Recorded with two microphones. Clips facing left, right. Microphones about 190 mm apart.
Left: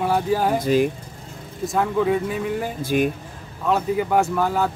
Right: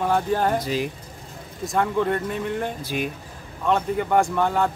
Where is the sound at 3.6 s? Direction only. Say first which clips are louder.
Left 1 dB; 5° left (ahead or behind).